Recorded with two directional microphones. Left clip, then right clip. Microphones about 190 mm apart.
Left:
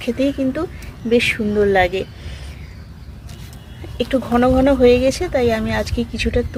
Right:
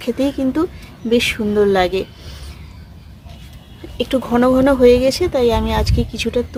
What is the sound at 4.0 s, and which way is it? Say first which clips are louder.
Speech: right 1 dB; 25° right (ahead or behind).